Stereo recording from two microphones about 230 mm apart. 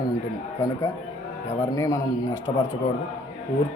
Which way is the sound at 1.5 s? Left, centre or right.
Centre.